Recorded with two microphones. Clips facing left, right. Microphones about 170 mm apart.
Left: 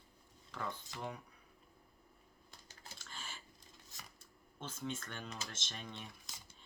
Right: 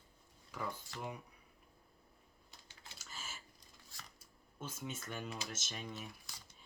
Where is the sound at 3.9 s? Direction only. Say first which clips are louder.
Even; 20° left (ahead or behind).